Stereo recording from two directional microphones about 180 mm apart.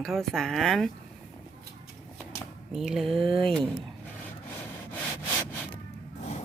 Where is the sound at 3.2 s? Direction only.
30° right (ahead or behind).